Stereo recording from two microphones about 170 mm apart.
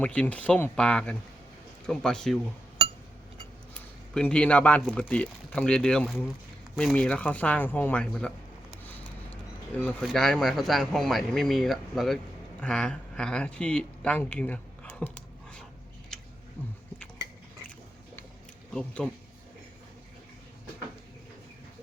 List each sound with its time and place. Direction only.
0.0 s speech: 10° left (ahead or behind)
3.8 s speech: 5° left (ahead or behind)
18.7 s speech: 5° left (ahead or behind)